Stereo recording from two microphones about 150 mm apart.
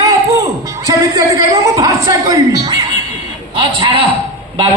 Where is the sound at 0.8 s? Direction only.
20° right (ahead or behind).